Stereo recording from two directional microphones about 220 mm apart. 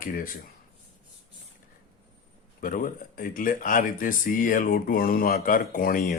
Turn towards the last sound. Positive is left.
turn(degrees=40)  # may be behind; listen again after turning